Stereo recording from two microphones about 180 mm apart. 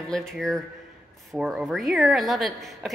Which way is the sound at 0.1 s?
5° left (ahead or behind).